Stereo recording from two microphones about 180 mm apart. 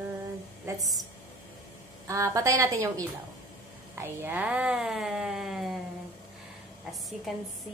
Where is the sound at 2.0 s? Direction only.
15° right (ahead or behind).